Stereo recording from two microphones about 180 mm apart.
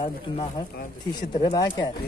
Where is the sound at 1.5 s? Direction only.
20° left (ahead or behind).